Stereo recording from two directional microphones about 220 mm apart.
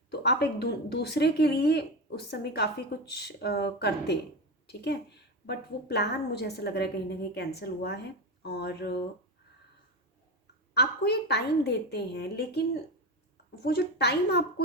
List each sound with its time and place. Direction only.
0.1 s speech: 50° left (ahead or behind)
10.8 s speech: 50° left (ahead or behind)